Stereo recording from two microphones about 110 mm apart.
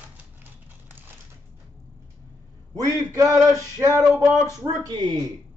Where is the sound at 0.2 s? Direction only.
20° right (ahead or behind).